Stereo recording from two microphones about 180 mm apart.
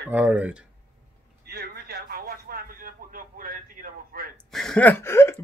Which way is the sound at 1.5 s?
60° right (ahead or behind).